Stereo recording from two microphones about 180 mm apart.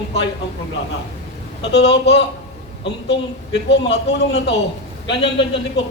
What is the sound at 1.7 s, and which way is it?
A man's voice, 70° left (ahead or behind).